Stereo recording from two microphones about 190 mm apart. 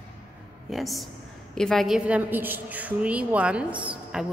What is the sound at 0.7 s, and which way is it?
A woman's voice, centre (ahead or behind).